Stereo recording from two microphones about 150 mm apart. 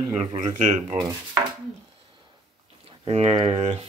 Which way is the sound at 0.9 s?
30° right (ahead or behind).